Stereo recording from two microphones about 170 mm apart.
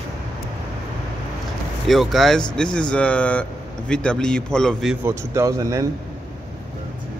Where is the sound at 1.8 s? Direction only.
Centre (ahead or behind).